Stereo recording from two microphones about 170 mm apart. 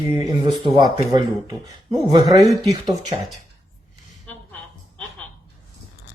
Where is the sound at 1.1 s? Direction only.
20° right (ahead or behind).